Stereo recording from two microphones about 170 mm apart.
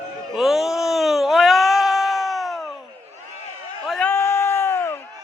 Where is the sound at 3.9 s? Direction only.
5° left (ahead or behind).